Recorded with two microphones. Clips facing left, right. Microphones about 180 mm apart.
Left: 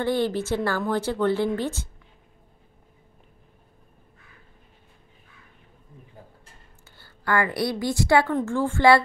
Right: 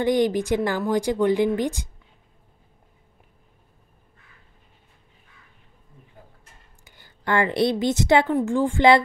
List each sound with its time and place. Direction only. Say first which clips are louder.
0.0 s a woman's voice: right 4 dB; 15° right (ahead or behind)
6.8 s a woman's voice: right 2 dB; 20° right (ahead or behind)